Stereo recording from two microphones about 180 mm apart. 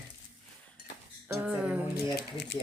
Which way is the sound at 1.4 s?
5° right (ahead or behind).